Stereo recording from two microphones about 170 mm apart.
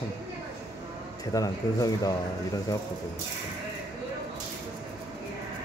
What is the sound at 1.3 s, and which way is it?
Speech, 20° left (ahead or behind).